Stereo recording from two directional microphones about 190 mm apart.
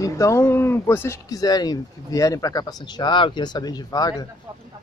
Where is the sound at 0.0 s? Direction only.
15° left (ahead or behind).